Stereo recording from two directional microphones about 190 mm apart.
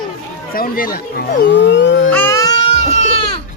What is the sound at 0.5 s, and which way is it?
Speech, 50° left (ahead or behind).